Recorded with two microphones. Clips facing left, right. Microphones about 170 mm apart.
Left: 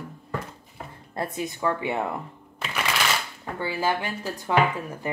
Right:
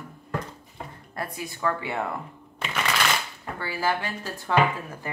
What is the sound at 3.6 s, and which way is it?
Speech, 20° left (ahead or behind).